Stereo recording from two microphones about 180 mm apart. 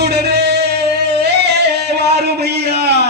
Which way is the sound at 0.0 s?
65° right (ahead or behind).